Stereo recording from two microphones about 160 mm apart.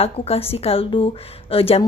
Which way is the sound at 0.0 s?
40° left (ahead or behind).